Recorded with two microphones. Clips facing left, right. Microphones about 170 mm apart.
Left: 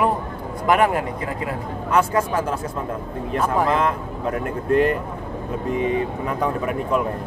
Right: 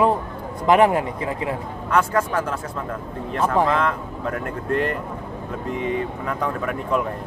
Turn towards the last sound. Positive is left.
turn(degrees=20)  # may be behind; listen again after turning